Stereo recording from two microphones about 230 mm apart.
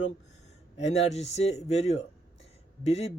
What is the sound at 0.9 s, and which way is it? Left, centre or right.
A man's voice, left.